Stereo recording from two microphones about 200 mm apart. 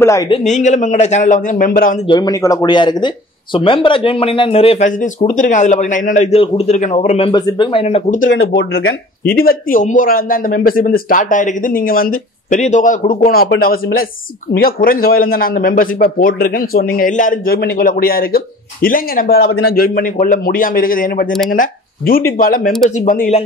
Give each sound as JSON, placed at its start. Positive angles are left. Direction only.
{"t": 0.0, "sound": "speech", "side_deg": 15}
{"t": 0.3, "sound": "speech", "side_deg": 35}
{"t": 2.0, "sound": "speech", "side_deg": 20}
{"t": 8.3, "sound": "speech", "side_deg": 75}
{"t": 9.4, "sound": "speech", "side_deg": 45}